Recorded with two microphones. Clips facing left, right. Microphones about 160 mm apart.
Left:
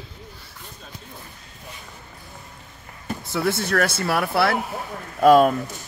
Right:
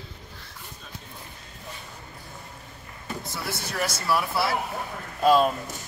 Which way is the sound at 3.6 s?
60° left (ahead or behind).